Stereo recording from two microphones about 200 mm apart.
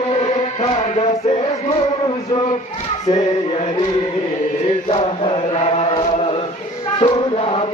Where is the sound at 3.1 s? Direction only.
20° left (ahead or behind).